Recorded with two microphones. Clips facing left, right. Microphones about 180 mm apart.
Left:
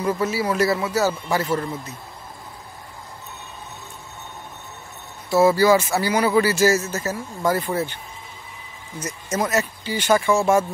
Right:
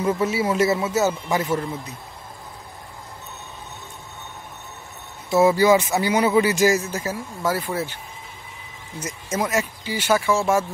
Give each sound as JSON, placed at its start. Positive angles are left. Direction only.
{"t": 0.2, "sound": "a man's voice", "side_deg": -20}
{"t": 5.3, "sound": "speech", "side_deg": -20}
{"t": 9.0, "sound": "speech", "side_deg": -10}